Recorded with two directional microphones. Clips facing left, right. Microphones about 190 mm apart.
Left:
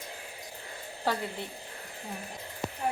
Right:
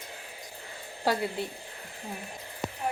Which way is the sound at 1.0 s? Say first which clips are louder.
Right 4 dB; 10° right (ahead or behind).